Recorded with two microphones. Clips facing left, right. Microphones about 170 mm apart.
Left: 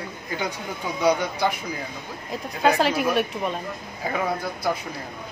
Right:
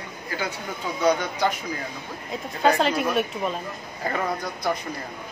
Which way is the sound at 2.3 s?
Centre (ahead or behind).